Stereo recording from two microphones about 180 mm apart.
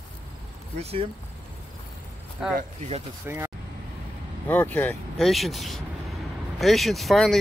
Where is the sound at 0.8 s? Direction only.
35° right (ahead or behind).